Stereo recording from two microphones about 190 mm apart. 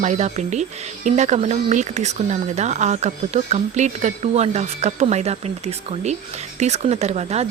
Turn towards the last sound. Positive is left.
turn(degrees=-35)  # may be behind; listen again after turning